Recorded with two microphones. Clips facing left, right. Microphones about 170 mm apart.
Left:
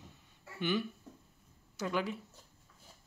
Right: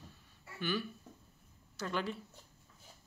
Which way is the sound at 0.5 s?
20° left (ahead or behind).